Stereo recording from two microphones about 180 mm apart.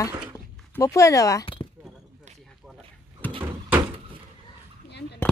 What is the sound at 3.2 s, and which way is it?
Door, 10° left (ahead or behind).